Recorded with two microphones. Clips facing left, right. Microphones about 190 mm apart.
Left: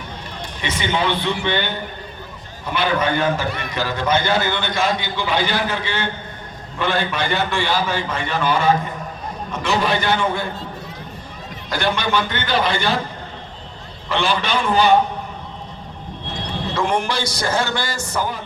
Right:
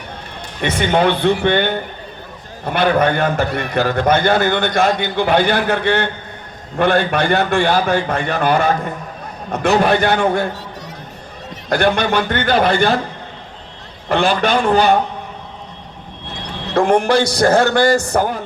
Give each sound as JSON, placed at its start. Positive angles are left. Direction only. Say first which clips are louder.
{"t": 0.6, "sound": "a man's voice", "louder": "right 7 dB", "side_deg": -50}
{"t": 11.7, "sound": "a man's voice", "louder": "right 5 dB", "side_deg": -65}
{"t": 14.1, "sound": "a man's voice", "louder": "right 5 dB", "side_deg": -45}
{"t": 14.6, "sound": "a man's voice", "louder": "right 2 dB", "side_deg": -65}
{"t": 16.8, "sound": "a man's voice", "louder": "right 8 dB", "side_deg": -45}